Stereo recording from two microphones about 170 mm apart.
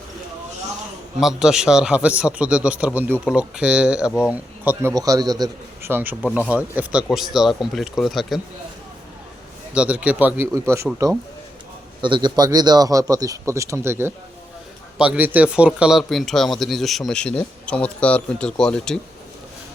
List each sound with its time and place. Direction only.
1.2 s a man's voice: 5° right (ahead or behind); by 5.9 s 20° right (ahead or behind)
5.9 s a man's voice: 10° right (ahead or behind)
9.7 s a man's voice: 5° right (ahead or behind)
12.0 s speech: 25° right (ahead or behind); by 18.9 s 5° left (ahead or behind)